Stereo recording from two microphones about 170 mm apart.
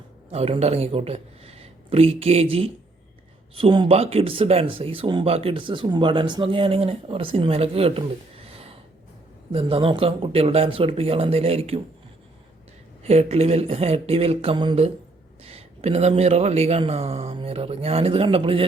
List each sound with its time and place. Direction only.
0.3 s speech: 35° right (ahead or behind)
9.5 s speech: 35° right (ahead or behind)
13.0 s speech: 40° right (ahead or behind)